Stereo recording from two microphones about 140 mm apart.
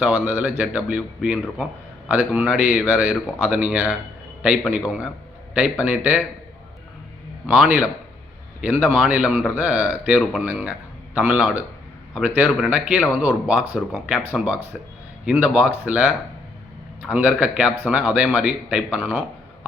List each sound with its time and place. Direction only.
0.0 s a man's voice: 10° right (ahead or behind)
7.4 s a man's voice: 10° right (ahead or behind)